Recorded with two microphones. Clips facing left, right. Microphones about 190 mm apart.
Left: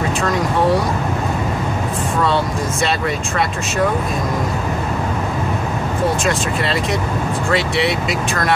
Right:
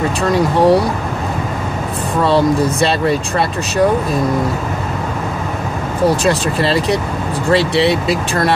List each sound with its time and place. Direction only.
0.2 s speech: 35° right (ahead or behind)
2.2 s speech: 35° right (ahead or behind)
6.0 s speech: 35° right (ahead or behind)